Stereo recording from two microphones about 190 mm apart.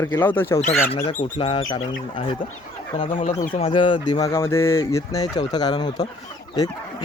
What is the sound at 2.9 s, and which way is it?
Speech, 40° left (ahead or behind).